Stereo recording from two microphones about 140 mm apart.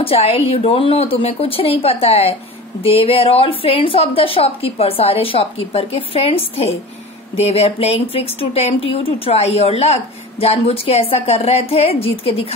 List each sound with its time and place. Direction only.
0.0 s a woman's voice: 45° left (ahead or behind)